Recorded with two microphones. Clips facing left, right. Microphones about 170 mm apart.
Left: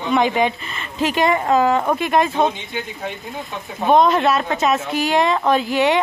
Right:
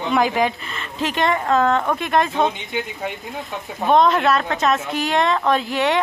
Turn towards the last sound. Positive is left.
turn(degrees=0)  # may be behind; listen again after turning